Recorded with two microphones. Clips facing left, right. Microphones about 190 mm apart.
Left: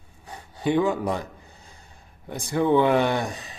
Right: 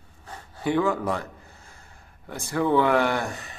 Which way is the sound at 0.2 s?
15° left (ahead or behind).